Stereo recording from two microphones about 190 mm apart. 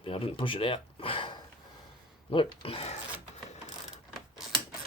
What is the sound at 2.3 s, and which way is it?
Speech, 30° left (ahead or behind).